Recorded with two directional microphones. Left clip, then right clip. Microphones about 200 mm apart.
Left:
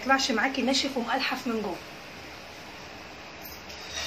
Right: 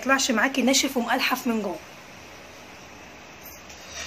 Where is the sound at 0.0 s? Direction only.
50° right (ahead or behind).